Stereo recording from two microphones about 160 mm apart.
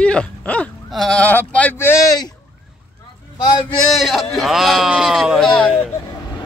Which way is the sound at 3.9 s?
Centre (ahead or behind).